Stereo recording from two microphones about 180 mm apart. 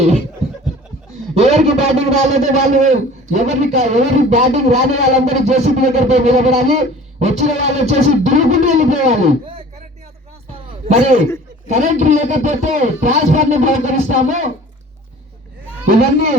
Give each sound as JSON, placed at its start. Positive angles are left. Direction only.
{"t": 1.4, "sound": "a man's voice", "side_deg": -35}
{"t": 10.5, "sound": "a sound", "side_deg": -35}
{"t": 11.7, "sound": "speech", "side_deg": -40}